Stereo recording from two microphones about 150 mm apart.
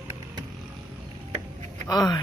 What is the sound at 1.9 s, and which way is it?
Speech, 25° left (ahead or behind).